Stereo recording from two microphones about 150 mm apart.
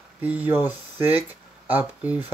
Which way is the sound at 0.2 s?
10° right (ahead or behind).